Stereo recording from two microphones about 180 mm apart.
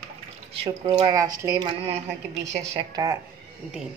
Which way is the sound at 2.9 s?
20° right (ahead or behind).